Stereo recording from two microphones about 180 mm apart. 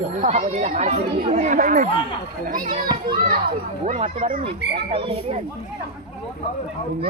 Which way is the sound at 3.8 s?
40° right (ahead or behind).